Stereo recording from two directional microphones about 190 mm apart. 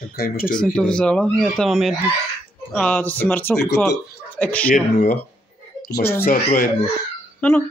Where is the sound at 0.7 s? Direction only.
5° left (ahead or behind).